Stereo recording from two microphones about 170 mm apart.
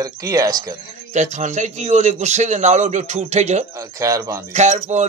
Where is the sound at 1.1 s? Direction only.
45° right (ahead or behind).